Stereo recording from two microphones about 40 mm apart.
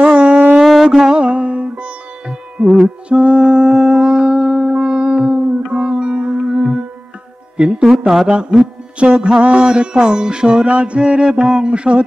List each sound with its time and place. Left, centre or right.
0.0 s a sound: right
0.8 s music: centre
1.1 s music: right
7.9 s speech: centre
8.3 s music: right